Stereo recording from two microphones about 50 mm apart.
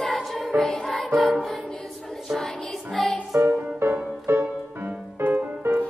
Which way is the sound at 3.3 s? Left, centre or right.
Right.